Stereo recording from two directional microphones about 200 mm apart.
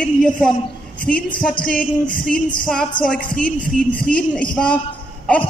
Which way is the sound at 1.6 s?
5° left (ahead or behind).